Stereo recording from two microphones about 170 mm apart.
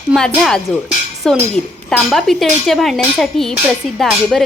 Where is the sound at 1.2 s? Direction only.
5° left (ahead or behind).